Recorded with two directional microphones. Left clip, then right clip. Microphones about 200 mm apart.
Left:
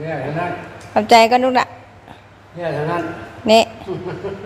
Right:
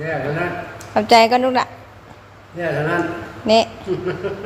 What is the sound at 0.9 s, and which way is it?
Speech, 10° left (ahead or behind).